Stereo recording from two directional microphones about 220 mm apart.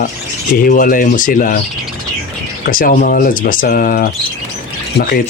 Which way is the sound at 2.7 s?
40° left (ahead or behind).